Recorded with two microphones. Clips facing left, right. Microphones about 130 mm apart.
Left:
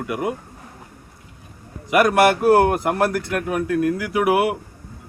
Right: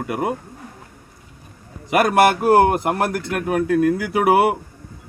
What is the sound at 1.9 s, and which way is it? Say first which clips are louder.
Speech: even; 25° right (ahead or behind).